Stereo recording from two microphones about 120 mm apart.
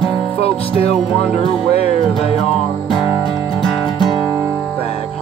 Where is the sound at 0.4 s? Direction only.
55° left (ahead or behind).